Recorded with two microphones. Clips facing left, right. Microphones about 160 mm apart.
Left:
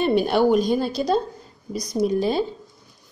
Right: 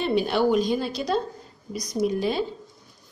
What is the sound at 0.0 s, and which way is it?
A woman's voice, 50° left (ahead or behind).